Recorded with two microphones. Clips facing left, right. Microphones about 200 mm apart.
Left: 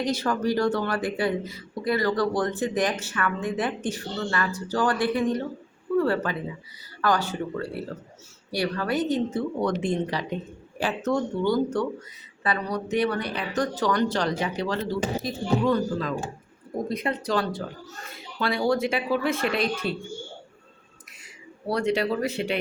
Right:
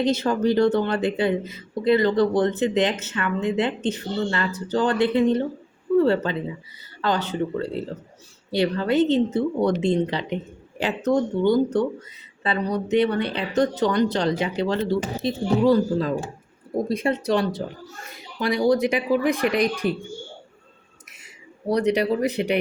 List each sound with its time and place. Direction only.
0.0 s speech: 25° right (ahead or behind)
21.7 s speech: 20° right (ahead or behind)